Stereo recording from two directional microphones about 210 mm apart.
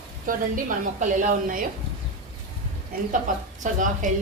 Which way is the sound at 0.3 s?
40° right (ahead or behind).